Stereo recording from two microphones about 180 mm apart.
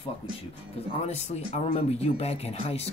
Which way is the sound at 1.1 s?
35° left (ahead or behind).